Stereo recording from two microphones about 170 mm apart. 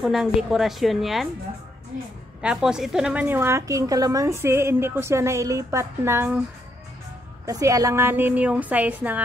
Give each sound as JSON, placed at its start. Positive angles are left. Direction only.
{"t": 0.0, "sound": "a woman's voice", "side_deg": 0}
{"t": 2.4, "sound": "a woman's voice", "side_deg": -5}
{"t": 7.4, "sound": "a woman's voice", "side_deg": -20}